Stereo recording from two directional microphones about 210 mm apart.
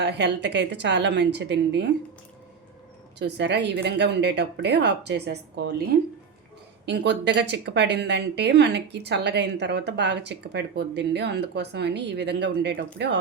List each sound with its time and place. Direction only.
0.0 s a woman's voice: 55° right (ahead or behind)
3.2 s a woman's voice: 55° right (ahead or behind)